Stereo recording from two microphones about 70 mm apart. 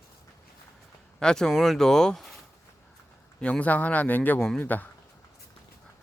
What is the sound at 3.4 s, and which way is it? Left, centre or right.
Speech, centre.